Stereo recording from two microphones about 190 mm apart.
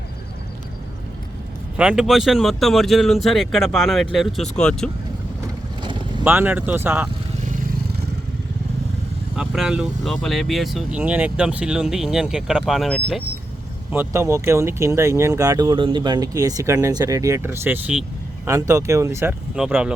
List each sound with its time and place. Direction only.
1.7 s speech: 5° right (ahead or behind)
5.8 s boat: 25° right (ahead or behind)
6.2 s speech: 10° right (ahead or behind)
9.3 s speech: 5° right (ahead or behind)
13.9 s speech: 10° right (ahead or behind)